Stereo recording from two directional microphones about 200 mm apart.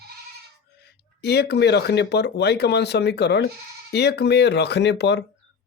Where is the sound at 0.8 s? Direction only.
55° left (ahead or behind).